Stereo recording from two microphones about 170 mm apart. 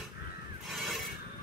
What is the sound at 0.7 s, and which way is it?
Neigh, centre (ahead or behind).